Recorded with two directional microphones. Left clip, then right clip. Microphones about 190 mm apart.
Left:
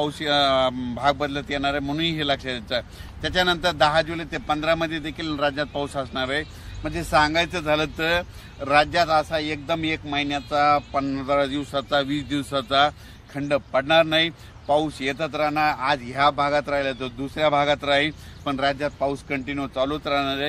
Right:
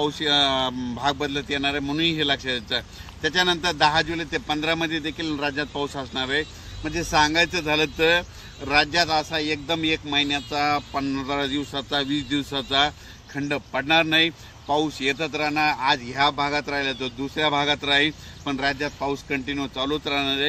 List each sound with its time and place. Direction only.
0.0 s a man's voice: 25° left (ahead or behind)